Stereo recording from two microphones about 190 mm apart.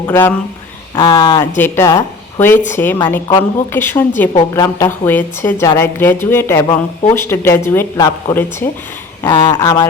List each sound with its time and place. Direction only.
0.0 s a woman's voice: 10° left (ahead or behind)